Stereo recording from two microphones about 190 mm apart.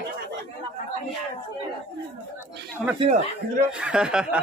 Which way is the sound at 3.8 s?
5° right (ahead or behind).